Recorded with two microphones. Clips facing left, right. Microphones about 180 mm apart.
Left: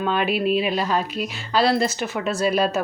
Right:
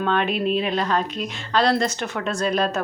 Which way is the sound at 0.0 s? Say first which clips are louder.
Even; 5° left (ahead or behind).